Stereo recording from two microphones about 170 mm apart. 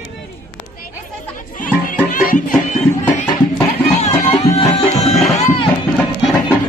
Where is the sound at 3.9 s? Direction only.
35° left (ahead or behind).